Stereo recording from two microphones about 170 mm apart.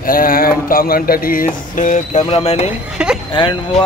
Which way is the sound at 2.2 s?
35° left (ahead or behind).